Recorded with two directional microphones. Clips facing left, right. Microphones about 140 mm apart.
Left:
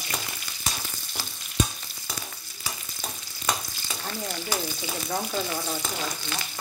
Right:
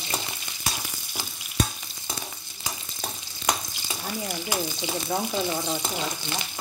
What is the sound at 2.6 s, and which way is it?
Stir, 20° right (ahead or behind).